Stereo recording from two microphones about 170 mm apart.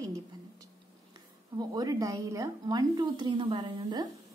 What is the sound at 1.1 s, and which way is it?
A woman's voice, 25° right (ahead or behind).